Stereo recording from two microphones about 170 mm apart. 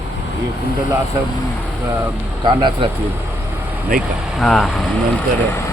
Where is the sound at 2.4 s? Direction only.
25° right (ahead or behind).